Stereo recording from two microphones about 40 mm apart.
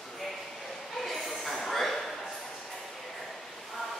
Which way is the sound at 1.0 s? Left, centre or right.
Centre.